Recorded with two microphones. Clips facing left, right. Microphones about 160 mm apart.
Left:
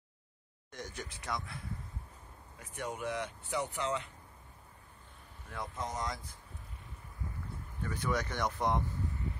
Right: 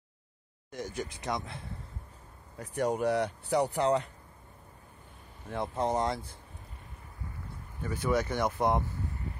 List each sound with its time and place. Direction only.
0.7 s speech: 10° right (ahead or behind)
2.6 s speech: 35° right (ahead or behind)
5.5 s speech: 30° right (ahead or behind)
7.8 s speech: 10° right (ahead or behind)